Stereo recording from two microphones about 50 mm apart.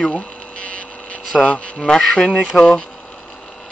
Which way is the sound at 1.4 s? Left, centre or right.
Left.